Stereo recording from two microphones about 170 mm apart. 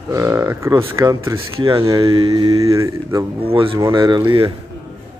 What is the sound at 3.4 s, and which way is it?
Speech, 35° right (ahead or behind).